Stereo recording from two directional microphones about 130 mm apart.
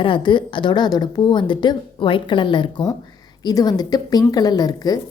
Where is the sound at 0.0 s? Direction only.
40° left (ahead or behind).